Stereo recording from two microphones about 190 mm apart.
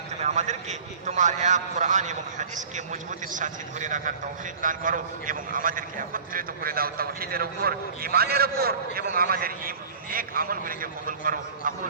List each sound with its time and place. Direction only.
0.2 s a man's voice: 35° right (ahead or behind)